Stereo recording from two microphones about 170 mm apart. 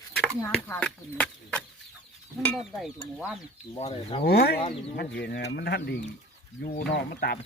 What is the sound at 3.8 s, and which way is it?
Speech, 35° left (ahead or behind).